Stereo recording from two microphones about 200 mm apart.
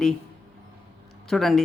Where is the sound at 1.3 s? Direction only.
Centre (ahead or behind).